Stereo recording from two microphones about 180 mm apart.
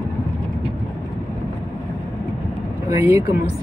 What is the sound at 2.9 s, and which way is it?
Speech, 15° right (ahead or behind).